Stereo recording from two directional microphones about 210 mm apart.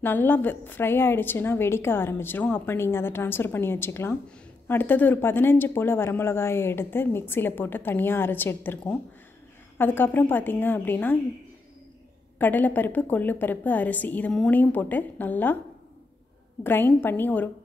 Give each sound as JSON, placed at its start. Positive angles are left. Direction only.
{"t": 0.0, "sound": "speech", "side_deg": 10}
{"t": 12.4, "sound": "speech", "side_deg": 10}
{"t": 16.6, "sound": "speech", "side_deg": 10}